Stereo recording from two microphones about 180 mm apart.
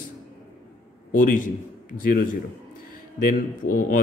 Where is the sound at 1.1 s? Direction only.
50° left (ahead or behind).